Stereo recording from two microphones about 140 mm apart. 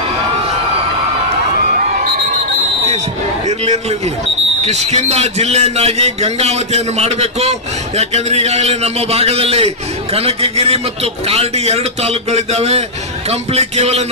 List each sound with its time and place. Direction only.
3.4 s a man's voice: 50° right (ahead or behind)